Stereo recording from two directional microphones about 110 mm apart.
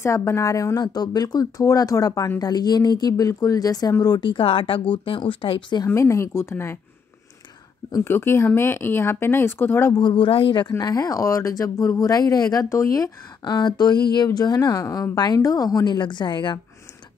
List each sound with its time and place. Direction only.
0.0 s speech: 25° left (ahead or behind); by 5.9 s 45° left (ahead or behind)
5.9 s speech: 25° left (ahead or behind)
7.9 s speech: 25° left (ahead or behind)
9.9 s speech: 45° left (ahead or behind)
10.8 s speech: 35° left (ahead or behind)